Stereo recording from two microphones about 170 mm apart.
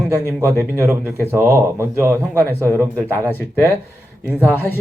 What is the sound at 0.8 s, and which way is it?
Speech, 10° right (ahead or behind).